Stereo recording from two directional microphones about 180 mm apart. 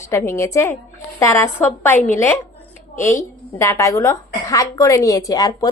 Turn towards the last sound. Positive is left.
turn(degrees=20)  # may be behind; listen again after turning